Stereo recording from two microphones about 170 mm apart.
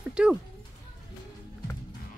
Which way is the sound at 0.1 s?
5° right (ahead or behind).